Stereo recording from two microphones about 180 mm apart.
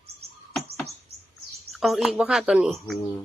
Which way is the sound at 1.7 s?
Centre (ahead or behind).